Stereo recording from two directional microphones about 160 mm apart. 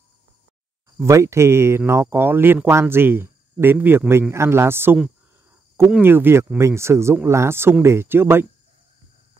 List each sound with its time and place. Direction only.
0.9 s speech: 20° right (ahead or behind)